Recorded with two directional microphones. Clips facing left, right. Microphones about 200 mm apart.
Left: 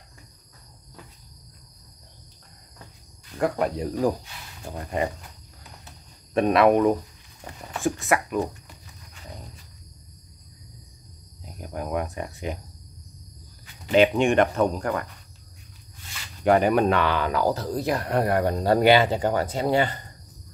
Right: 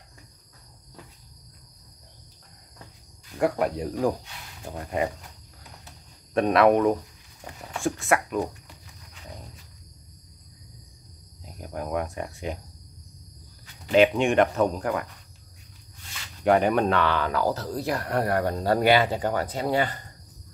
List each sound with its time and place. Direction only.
3.3 s speech: 10° right (ahead or behind)
6.3 s speech: centre (ahead or behind)
11.4 s speech: centre (ahead or behind)
13.8 s speech: centre (ahead or behind)
16.4 s speech: 5° left (ahead or behind); by 20.0 s 25° left (ahead or behind)